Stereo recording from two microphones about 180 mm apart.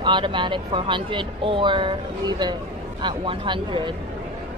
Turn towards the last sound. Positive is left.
turn(degrees=-25)  # may be behind; listen again after turning